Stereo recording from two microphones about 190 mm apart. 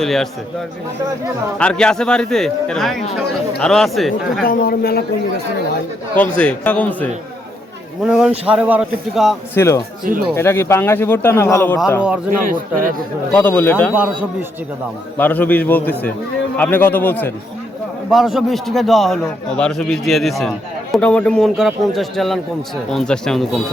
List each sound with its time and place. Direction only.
0.0 s a man's voice: centre (ahead or behind)
1.5 s a man's voice: 5° left (ahead or behind)
4.4 s speech: 50° left (ahead or behind)
6.1 s a man's voice: 5° left (ahead or behind)
8.0 s a man's voice: 5° right (ahead or behind)
9.6 s a man's voice: 15° left (ahead or behind)
10.0 s a man's voice: 50° right (ahead or behind)
10.3 s a man's voice: 15° left (ahead or behind)
12.5 s a man's voice: 45° right (ahead or behind)
13.3 s a man's voice: 10° left (ahead or behind)
15.2 s a man's voice: 10° left (ahead or behind)
18.1 s a man's voice: centre (ahead or behind)